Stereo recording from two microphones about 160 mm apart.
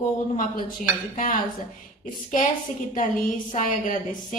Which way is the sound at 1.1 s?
55° left (ahead or behind).